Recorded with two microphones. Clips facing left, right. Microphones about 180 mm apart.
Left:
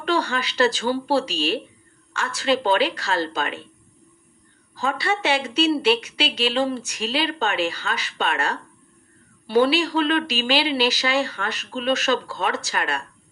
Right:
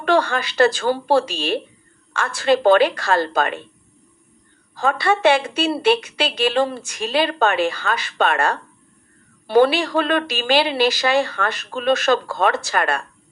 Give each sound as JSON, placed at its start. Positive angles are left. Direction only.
{"t": 0.0, "sound": "a woman's voice", "side_deg": -50}
{"t": 4.7, "sound": "a woman's voice", "side_deg": -55}